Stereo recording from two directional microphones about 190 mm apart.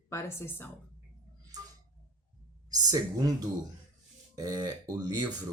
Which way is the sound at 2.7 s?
20° right (ahead or behind).